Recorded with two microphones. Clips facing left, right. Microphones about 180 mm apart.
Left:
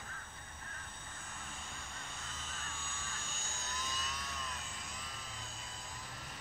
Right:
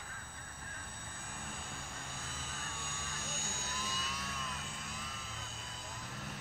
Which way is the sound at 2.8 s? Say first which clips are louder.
Right 2 dB; 15° right (ahead or behind).